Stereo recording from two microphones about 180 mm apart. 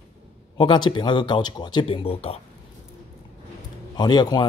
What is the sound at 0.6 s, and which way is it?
Speech, 25° left (ahead or behind).